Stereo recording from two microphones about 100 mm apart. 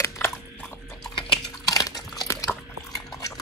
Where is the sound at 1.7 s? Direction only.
35° left (ahead or behind).